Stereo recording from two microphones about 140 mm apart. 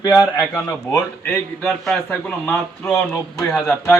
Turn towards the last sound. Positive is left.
turn(degrees=5)  # may be behind; listen again after turning